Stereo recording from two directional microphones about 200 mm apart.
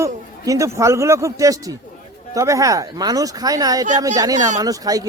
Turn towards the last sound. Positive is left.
turn(degrees=-20)  # may be behind; listen again after turning